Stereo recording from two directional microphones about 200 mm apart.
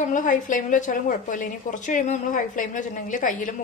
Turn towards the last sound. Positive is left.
turn(degrees=40)  # may be behind; listen again after turning